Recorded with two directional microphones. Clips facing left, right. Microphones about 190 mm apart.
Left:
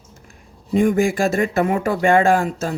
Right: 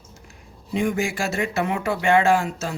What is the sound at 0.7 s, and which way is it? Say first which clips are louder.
Speech: left 7 dB; 50° left (ahead or behind).